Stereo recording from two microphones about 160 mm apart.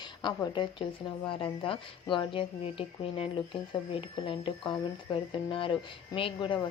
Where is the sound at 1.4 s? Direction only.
30° left (ahead or behind).